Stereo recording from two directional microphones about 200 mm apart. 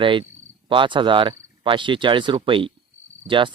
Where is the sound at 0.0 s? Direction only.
25° right (ahead or behind).